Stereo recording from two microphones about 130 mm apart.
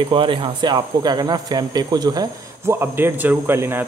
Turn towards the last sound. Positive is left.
turn(degrees=-15)  # may be behind; listen again after turning